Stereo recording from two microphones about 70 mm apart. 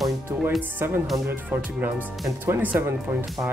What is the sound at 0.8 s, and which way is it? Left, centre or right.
Speech, right.